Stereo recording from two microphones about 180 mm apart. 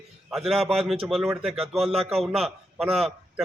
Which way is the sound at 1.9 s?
35° right (ahead or behind).